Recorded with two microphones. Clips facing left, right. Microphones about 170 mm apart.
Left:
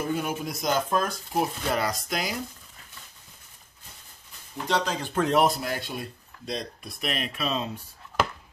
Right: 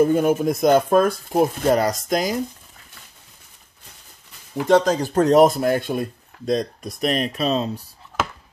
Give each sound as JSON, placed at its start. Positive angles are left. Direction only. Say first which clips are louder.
{"t": 0.0, "sound": "speech", "louder": "right 12 dB", "side_deg": -45}
{"t": 4.6, "sound": "speech", "louder": "right 11 dB", "side_deg": -45}